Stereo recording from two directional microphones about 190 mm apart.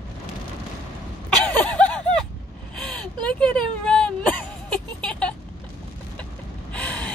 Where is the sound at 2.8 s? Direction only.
5° left (ahead or behind).